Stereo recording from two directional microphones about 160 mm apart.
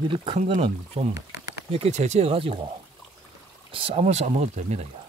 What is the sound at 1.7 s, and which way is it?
Speech, 40° right (ahead or behind).